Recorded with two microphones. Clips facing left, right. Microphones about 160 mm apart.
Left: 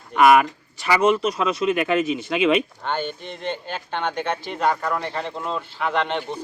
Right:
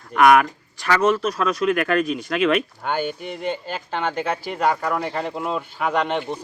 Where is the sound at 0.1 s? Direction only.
5° left (ahead or behind).